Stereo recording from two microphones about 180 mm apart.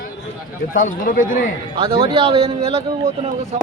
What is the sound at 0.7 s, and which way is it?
Speech, 45° left (ahead or behind).